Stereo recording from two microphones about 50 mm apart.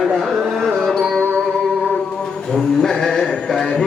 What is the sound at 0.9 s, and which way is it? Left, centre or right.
Carnatic music, centre.